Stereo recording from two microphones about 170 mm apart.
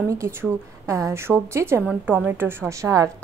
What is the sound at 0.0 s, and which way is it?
A woman's voice, 20° right (ahead or behind).